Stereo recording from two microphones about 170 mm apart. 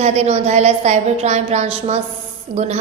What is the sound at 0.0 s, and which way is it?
A woman's voice, 40° right (ahead or behind).